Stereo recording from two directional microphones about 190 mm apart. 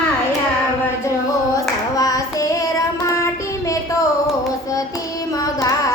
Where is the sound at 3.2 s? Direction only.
15° left (ahead or behind).